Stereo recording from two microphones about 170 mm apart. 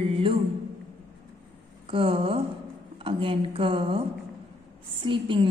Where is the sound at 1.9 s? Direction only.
30° right (ahead or behind).